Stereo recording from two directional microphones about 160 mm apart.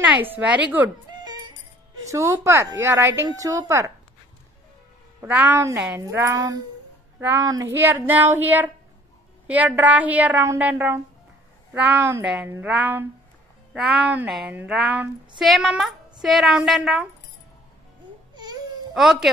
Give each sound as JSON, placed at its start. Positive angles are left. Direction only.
{"t": 0.0, "sound": "a woman's voice", "side_deg": -10}
{"t": 2.0, "sound": "a woman's voice", "side_deg": -20}
{"t": 5.2, "sound": "a woman's voice", "side_deg": -10}
{"t": 18.3, "sound": "baby cry", "side_deg": -25}
{"t": 18.9, "sound": "speech", "side_deg": 0}